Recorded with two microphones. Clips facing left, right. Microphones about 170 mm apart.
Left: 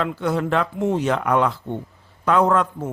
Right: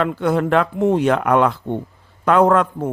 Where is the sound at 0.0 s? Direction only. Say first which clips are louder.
Right 4 dB; 55° right (ahead or behind).